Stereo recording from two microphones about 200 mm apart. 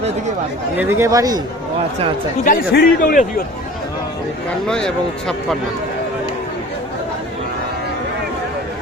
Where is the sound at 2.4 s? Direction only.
45° left (ahead or behind).